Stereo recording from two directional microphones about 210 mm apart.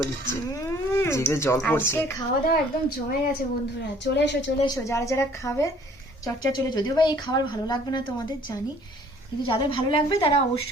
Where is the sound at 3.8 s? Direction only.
55° left (ahead or behind).